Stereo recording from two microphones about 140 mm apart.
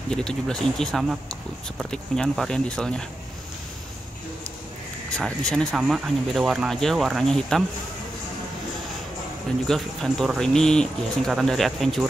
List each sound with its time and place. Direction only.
0.1 s speech: 5° left (ahead or behind)
5.1 s speech: 5° left (ahead or behind)
9.7 s speech: 5° left (ahead or behind)